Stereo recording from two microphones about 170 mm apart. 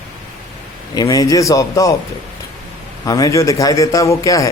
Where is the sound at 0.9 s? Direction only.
20° left (ahead or behind).